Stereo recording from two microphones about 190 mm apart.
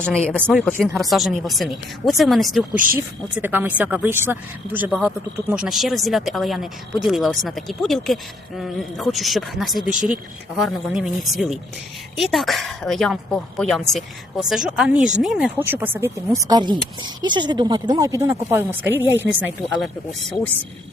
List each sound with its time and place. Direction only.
0.0 s speech: 5° left (ahead or behind)
2.7 s speech: 45° right (ahead or behind)
3.3 s speech: 10° right (ahead or behind)